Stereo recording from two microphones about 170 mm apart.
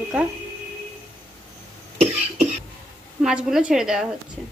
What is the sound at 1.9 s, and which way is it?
Cough, 40° right (ahead or behind).